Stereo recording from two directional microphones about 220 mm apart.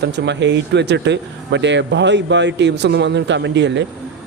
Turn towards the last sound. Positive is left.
turn(degrees=-55)  # may be behind; listen again after turning